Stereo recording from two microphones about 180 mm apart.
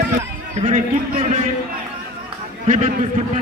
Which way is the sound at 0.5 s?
40° right (ahead or behind).